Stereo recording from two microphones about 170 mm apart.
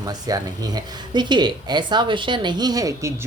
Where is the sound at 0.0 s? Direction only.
20° right (ahead or behind).